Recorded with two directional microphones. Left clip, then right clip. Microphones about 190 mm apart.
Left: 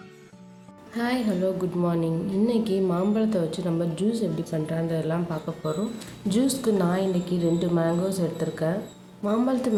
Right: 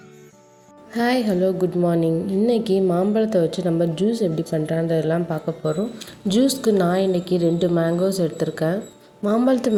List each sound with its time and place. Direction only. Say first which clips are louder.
0.9 s speech: right 7 dB; 35° right (ahead or behind)